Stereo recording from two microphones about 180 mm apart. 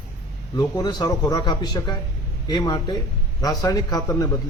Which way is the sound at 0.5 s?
20° left (ahead or behind).